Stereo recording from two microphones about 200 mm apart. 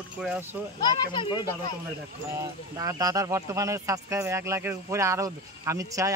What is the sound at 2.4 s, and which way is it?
Speech, 15° right (ahead or behind).